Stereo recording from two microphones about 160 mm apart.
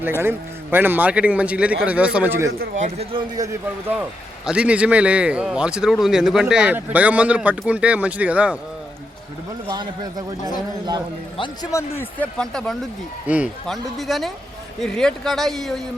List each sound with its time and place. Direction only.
0.2 s speech: 15° right (ahead or behind)
2.7 s speech: 45° right (ahead or behind)
3.3 s a man's voice: 20° right (ahead or behind)
4.4 s speech: 5° right (ahead or behind)
9.6 s a man's voice: 25° right (ahead or behind)
11.3 s a man's voice: 30° left (ahead or behind)
11.7 s speech: 15° left (ahead or behind)
13.2 s speech: 10° right (ahead or behind)